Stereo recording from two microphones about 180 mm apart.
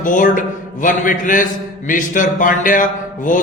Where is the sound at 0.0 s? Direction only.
45° left (ahead or behind).